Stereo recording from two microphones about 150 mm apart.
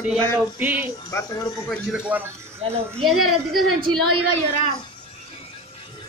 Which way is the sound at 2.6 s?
40° right (ahead or behind).